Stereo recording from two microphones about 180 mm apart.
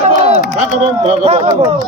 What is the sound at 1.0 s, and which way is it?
Speech, 35° right (ahead or behind).